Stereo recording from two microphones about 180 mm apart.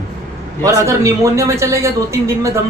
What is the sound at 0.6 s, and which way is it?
A man's voice, 15° right (ahead or behind).